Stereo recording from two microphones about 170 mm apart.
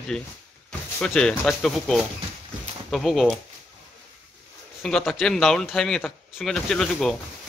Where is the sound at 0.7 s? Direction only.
5° left (ahead or behind).